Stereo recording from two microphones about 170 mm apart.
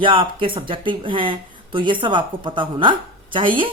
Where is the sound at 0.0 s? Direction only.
30° right (ahead or behind).